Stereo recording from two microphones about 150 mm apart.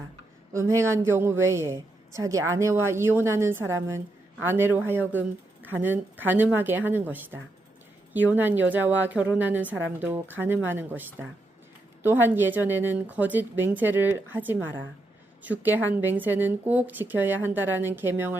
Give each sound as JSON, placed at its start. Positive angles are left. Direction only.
{"t": 0.5, "sound": "a woman's voice", "side_deg": -20}